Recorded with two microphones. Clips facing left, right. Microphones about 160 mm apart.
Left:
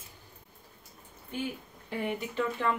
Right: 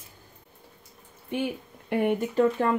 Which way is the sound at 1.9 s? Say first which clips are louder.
Right 9 dB; 60° right (ahead or behind).